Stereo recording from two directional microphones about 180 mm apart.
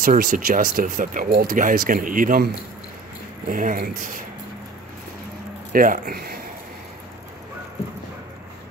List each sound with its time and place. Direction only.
0.0 s speech: 50° right (ahead or behind)
5.7 s speech: 50° right (ahead or behind)